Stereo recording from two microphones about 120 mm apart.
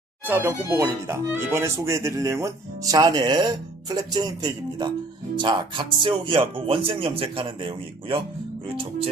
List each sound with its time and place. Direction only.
0.3 s speech: 15° right (ahead or behind); by 8.2 s 45° right (ahead or behind)